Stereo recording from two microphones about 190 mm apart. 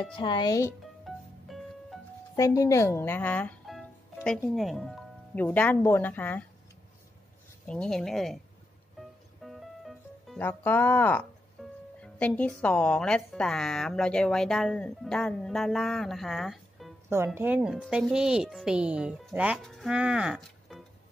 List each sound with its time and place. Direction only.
0.1 s speech: 25° left (ahead or behind)
1.0 s music: centre (ahead or behind)
2.3 s speech: 15° left (ahead or behind)
7.6 s speech: 5° left (ahead or behind)
9.4 s music: centre (ahead or behind)
10.4 s speech: 10° left (ahead or behind)
11.6 s music: centre (ahead or behind)
12.0 s speech: 5° left (ahead or behind)
17.1 s speech: 10° right (ahead or behind)